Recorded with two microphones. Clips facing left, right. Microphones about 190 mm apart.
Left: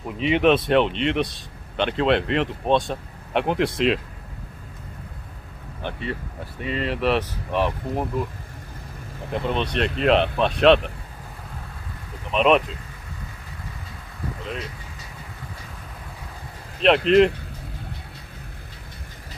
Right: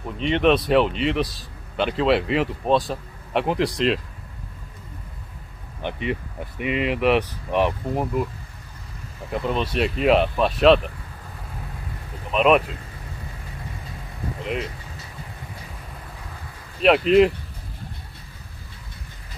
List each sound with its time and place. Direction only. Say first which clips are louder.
0.2 s speech: left 1 dB; 5° left (ahead or behind)
5.8 s speech: right 3 dB; 15° right (ahead or behind)
9.3 s speech: even; 5° right (ahead or behind)
12.3 s speech: right 1 dB; 5° right (ahead or behind)
16.8 s speech: even; 5° right (ahead or behind)